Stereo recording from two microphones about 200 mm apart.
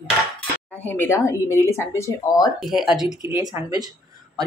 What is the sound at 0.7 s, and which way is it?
A woman's voice, 10° left (ahead or behind).